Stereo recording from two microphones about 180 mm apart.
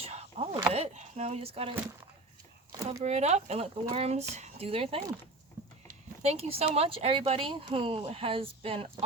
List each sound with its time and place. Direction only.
0.0 s chop: 35° right (ahead or behind)
0.7 s chopping: 35° right (ahead or behind)
3.0 s speech: 40° right (ahead or behind)
6.2 s speech: 35° right (ahead or behind)